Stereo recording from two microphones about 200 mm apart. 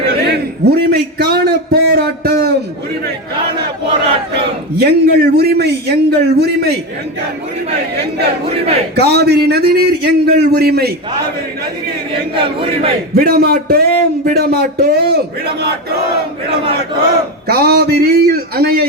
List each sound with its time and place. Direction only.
0.3 s a sound: 55° right (ahead or behind)
4.4 s a man's voice: 55° right (ahead or behind)
8.4 s speech: 30° right (ahead or behind)
9.0 s a man's voice: 55° right (ahead or behind)
12.3 s speech: 25° right (ahead or behind)
13.1 s a man's voice: 50° right (ahead or behind)
17.4 s a man's voice: 50° right (ahead or behind)